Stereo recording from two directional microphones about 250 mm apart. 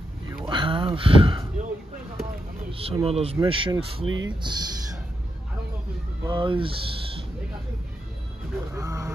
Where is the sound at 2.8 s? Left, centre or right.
Right.